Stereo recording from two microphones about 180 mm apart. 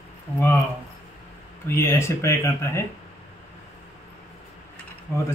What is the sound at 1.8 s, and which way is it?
Speech, 15° left (ahead or behind).